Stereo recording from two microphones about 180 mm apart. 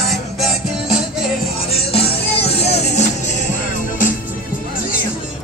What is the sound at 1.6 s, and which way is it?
Music, 30° left (ahead or behind).